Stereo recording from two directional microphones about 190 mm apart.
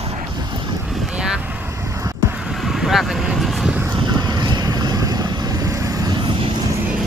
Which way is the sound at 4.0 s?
25° right (ahead or behind).